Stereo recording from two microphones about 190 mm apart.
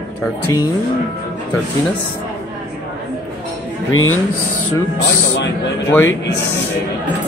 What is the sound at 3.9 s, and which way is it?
Speech, 90° left.